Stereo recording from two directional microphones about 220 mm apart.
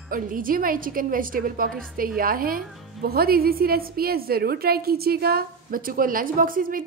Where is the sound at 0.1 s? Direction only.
40° right (ahead or behind).